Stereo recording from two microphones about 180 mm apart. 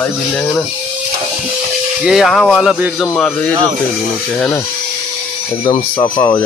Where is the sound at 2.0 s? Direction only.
Centre (ahead or behind).